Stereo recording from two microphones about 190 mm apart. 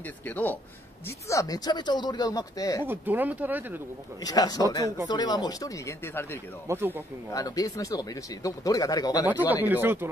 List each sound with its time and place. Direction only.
0.2 s speech: 10° left (ahead or behind)
2.9 s speech: 10° right (ahead or behind)
4.2 s speech: 20° left (ahead or behind)
6.7 s speech: 10° right (ahead or behind)
7.3 s speech: 20° left (ahead or behind)
9.2 s speech: 10° right (ahead or behind)